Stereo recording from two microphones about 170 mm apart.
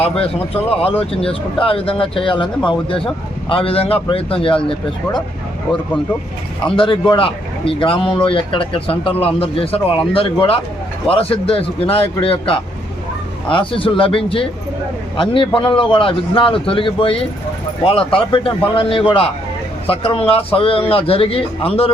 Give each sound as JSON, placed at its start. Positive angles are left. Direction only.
{"t": 0.0, "sound": "speech", "side_deg": 35}
{"t": 6.7, "sound": "speech", "side_deg": 30}